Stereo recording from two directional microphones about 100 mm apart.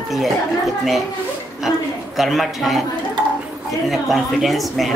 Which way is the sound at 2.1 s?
Centre (ahead or behind).